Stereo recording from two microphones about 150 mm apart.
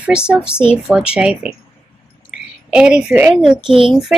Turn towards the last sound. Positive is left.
turn(degrees=0)  # may be behind; listen again after turning